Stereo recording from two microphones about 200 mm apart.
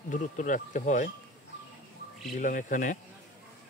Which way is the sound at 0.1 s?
40° left (ahead or behind).